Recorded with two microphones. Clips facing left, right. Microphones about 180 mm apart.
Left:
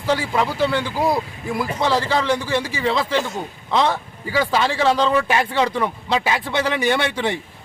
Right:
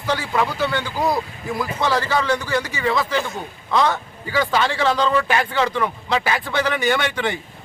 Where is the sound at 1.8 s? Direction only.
20° left (ahead or behind).